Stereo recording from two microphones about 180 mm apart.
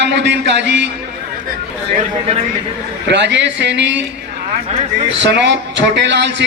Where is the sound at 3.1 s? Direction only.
75° right (ahead or behind).